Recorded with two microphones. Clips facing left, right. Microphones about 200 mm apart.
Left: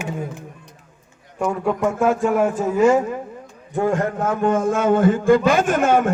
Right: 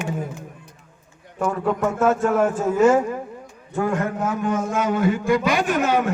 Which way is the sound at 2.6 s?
5° right (ahead or behind).